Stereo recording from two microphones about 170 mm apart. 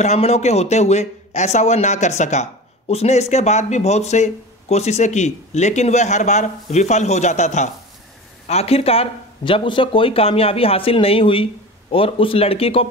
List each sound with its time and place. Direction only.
0.0 s speech: 40° left (ahead or behind)